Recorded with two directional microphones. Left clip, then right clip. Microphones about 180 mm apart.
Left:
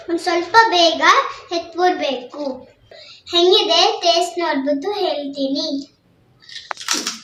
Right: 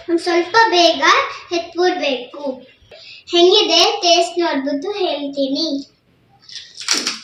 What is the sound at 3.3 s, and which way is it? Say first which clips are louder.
A child's voice: right 2 dB; 35° left (ahead or behind).